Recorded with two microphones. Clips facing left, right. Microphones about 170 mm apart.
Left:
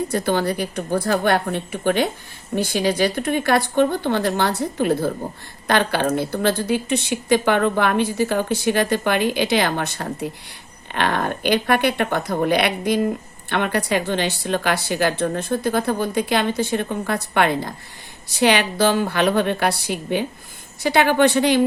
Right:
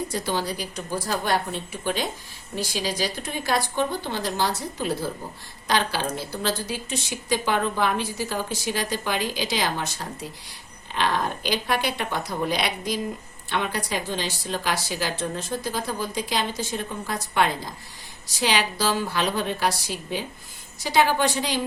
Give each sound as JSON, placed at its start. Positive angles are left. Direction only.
{"t": 0.1, "sound": "speech", "side_deg": 60}